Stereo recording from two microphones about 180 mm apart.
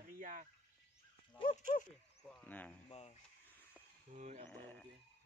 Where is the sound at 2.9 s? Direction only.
35° left (ahead or behind).